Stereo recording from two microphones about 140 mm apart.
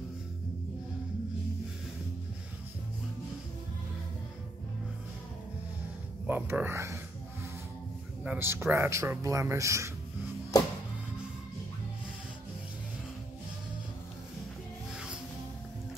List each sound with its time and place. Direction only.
6.2 s speech: 10° right (ahead or behind)
8.2 s speech: 15° right (ahead or behind)